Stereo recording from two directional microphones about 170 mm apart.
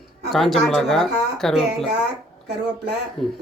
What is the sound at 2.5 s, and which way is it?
Speech, 80° right.